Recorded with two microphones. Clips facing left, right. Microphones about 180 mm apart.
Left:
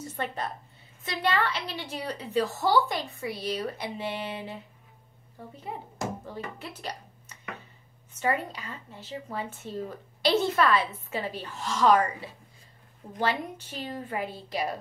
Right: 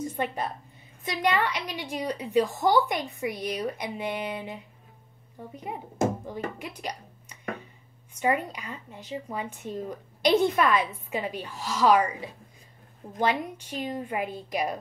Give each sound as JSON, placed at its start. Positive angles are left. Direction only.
{"t": 0.0, "sound": "a woman's voice", "side_deg": -15}
{"t": 5.6, "sound": "a child's voice", "side_deg": -15}